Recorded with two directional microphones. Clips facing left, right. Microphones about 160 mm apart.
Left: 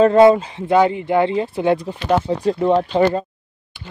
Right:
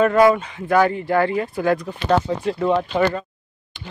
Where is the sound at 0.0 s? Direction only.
25° left (ahead or behind).